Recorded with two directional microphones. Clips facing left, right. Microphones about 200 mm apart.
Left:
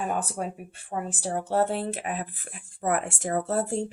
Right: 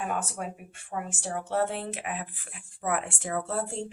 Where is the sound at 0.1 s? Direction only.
35° left (ahead or behind).